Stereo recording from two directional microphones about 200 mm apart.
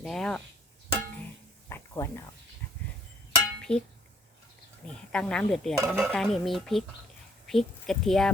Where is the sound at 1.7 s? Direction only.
15° left (ahead or behind).